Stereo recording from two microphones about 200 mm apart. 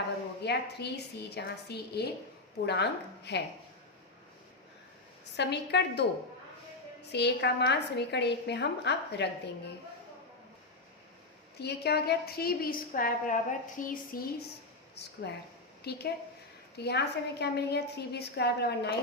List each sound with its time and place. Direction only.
0.4 s a woman's voice: 55° left (ahead or behind)
5.4 s a woman's voice: 60° left (ahead or behind)
11.6 s a woman's voice: 55° left (ahead or behind)